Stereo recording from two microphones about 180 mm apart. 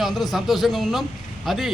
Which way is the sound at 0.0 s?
Centre (ahead or behind).